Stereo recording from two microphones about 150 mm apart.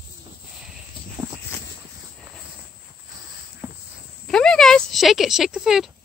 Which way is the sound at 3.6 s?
15° right (ahead or behind).